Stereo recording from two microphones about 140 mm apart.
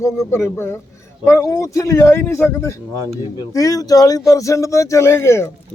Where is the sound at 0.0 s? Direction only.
20° left (ahead or behind).